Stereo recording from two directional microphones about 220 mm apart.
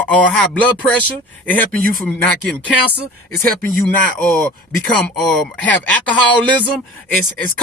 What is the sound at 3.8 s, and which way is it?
Speech, 5° left (ahead or behind).